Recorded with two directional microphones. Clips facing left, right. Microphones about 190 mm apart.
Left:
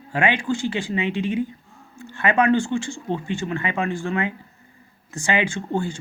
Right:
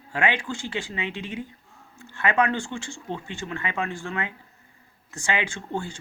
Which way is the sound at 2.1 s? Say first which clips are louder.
Left 5 dB; 20° left (ahead or behind).